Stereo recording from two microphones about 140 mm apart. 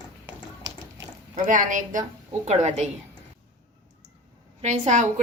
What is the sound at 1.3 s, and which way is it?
Speech, 70° right (ahead or behind).